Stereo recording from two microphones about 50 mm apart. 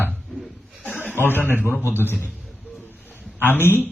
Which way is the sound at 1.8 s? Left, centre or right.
Left.